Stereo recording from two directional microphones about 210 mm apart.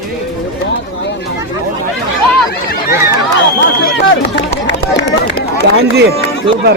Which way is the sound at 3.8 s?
50° left (ahead or behind).